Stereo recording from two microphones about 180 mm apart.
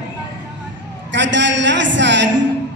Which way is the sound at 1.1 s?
85° right.